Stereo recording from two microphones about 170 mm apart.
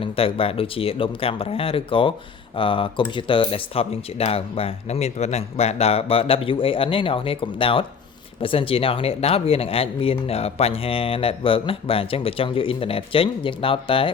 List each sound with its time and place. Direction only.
0.0 s speech: 35° left (ahead or behind)